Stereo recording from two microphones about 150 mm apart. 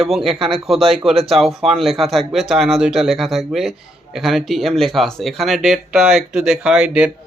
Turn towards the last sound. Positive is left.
turn(degrees=-5)  # may be behind; listen again after turning